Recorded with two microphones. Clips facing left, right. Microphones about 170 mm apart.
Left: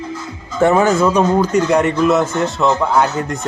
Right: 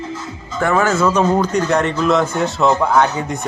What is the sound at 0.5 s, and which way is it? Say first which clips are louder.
Speech: left 4 dB; 20° left (ahead or behind).